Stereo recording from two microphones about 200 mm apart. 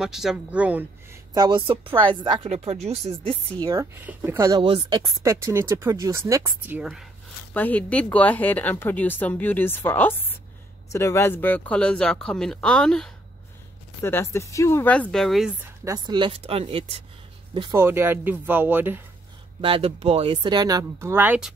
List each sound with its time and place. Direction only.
0.0 s speech: centre (ahead or behind)
1.3 s speech: 20° right (ahead or behind)
3.6 s speech: 10° right (ahead or behind)
15.8 s speech: 20° right (ahead or behind)
17.6 s speech: 15° right (ahead or behind)
19.6 s speech: 25° right (ahead or behind); by 21.5 s 5° right (ahead or behind)